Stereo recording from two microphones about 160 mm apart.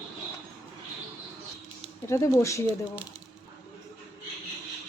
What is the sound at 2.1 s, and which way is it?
Speech, 15° left (ahead or behind).